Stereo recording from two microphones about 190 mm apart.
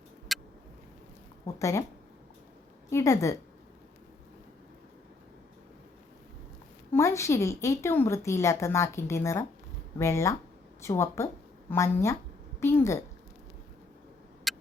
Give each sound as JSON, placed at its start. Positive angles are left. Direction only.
{"t": 0.3, "sound": "vehicle", "side_deg": 0}
{"t": 1.5, "sound": "a woman's voice", "side_deg": 15}
{"t": 2.9, "sound": "a woman's voice", "side_deg": 15}
{"t": 6.9, "sound": "a woman's voice", "side_deg": 15}
{"t": 14.5, "sound": "a sound", "side_deg": 0}